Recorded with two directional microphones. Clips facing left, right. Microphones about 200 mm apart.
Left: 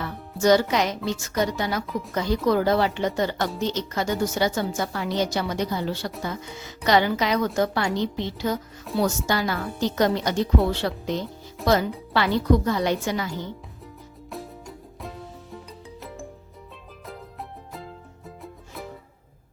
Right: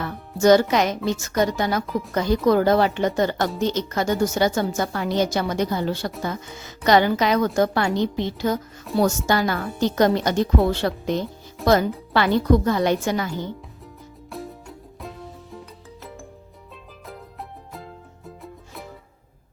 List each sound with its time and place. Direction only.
0.4 s speech: 50° right (ahead or behind)
14.3 s music: centre (ahead or behind)
17.7 s music: centre (ahead or behind)